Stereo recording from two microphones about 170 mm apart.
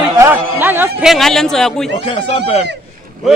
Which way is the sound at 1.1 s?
Centre (ahead or behind).